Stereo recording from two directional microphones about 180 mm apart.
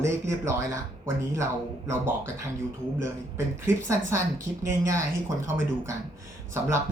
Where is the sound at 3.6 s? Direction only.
15° right (ahead or behind).